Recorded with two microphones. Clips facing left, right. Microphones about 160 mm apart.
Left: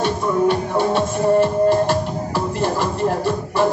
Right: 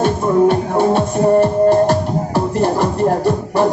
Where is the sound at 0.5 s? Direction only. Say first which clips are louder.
Right 4 dB; 40° right (ahead or behind).